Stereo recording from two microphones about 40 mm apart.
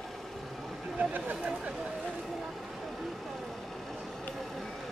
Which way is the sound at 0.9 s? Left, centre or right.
Right.